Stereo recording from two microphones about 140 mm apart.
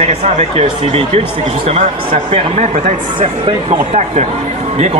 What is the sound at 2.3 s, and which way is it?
Speech, 55° right (ahead or behind).